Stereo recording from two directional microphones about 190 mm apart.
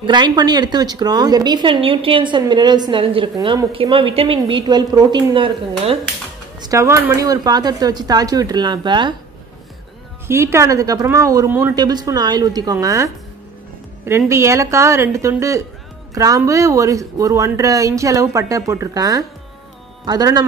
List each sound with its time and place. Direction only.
0.0 s a woman's voice: 25° right (ahead or behind)
6.7 s a woman's voice: 15° right (ahead or behind)
10.2 s a woman's voice: 15° right (ahead or behind)